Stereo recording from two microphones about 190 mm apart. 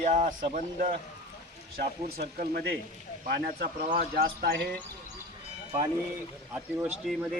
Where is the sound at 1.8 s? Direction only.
55° right (ahead or behind).